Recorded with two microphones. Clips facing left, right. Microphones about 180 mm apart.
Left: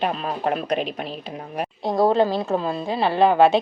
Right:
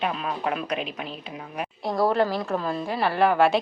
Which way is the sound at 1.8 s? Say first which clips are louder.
Left 4 dB; 20° left (ahead or behind).